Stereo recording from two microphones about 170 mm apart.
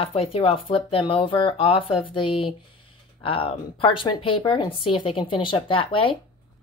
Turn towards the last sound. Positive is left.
turn(degrees=30)  # may be behind; listen again after turning